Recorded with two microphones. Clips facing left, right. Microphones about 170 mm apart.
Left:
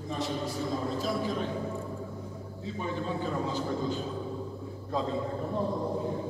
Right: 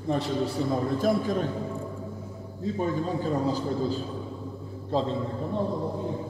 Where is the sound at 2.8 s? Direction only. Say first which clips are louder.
Right 4 dB; 40° right (ahead or behind).